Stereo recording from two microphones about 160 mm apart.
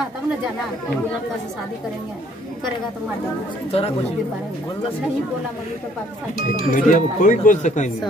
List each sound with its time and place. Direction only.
3.7 s speech: 35° left (ahead or behind)
6.4 s speech: 55° left (ahead or behind)